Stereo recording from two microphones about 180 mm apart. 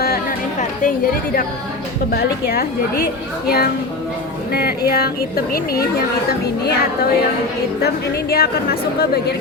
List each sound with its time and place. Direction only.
0.0 s chatter: 55° left (ahead or behind)
0.8 s a woman's voice: 50° left (ahead or behind)
8.3 s a woman's voice: 60° left (ahead or behind)